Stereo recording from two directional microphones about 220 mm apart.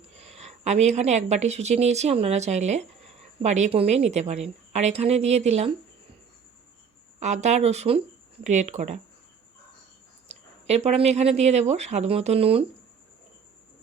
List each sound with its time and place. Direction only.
0.2 s a woman's voice: 30° right (ahead or behind)
7.2 s a woman's voice: 30° right (ahead or behind)
10.2 s a woman's voice: 30° right (ahead or behind)